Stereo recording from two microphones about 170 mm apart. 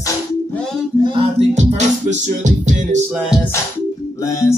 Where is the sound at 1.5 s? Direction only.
45° right (ahead or behind).